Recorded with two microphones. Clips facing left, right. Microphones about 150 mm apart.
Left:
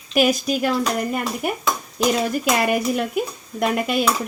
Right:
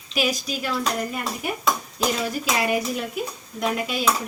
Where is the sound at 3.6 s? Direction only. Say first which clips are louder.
Left 5 dB; 60° left (ahead or behind).